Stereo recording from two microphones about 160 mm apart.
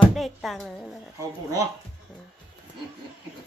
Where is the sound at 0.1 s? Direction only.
Centre (ahead or behind).